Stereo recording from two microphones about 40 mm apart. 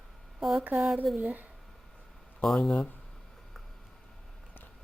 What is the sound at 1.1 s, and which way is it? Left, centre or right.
Speech, right.